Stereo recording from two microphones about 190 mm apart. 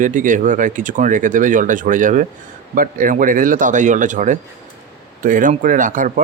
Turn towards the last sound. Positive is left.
turn(degrees=-45)  # may be behind; listen again after turning